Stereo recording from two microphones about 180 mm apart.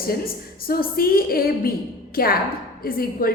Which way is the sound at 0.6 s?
55° left (ahead or behind).